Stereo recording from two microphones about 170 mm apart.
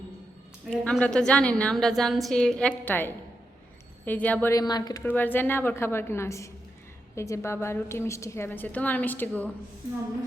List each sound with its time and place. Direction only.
0.7 s a woman's voice: 5° left (ahead or behind)
4.6 s speech: 25° left (ahead or behind)
5.0 s a woman's voice: 10° left (ahead or behind)